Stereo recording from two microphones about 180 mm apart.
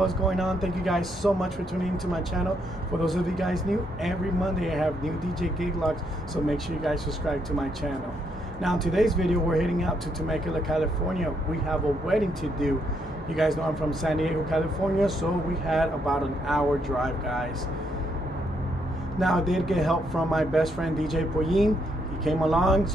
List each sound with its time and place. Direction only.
0.0 s speech: centre (ahead or behind)
8.6 s speech: centre (ahead or behind)
19.1 s speech: centre (ahead or behind)